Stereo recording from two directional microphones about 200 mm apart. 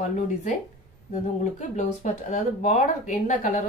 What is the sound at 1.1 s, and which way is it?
Speech, 35° left (ahead or behind).